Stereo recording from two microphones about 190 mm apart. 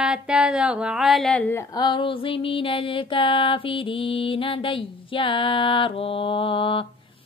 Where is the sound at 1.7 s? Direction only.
25° left (ahead or behind).